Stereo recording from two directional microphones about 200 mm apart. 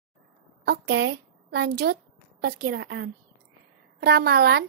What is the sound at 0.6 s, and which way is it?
A woman's voice, 55° right (ahead or behind).